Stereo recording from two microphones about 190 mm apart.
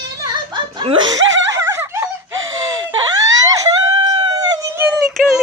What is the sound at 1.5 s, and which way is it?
Laughter, 15° right (ahead or behind).